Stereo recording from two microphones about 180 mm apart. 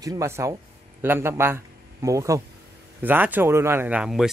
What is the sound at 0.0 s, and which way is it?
Speech, 20° right (ahead or behind).